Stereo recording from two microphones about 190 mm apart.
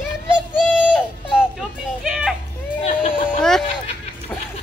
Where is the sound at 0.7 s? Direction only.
10° left (ahead or behind).